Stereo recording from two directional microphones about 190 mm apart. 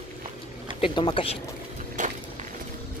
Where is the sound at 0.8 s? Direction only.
25° left (ahead or behind).